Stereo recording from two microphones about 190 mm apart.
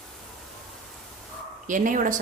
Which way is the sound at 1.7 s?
45° right (ahead or behind).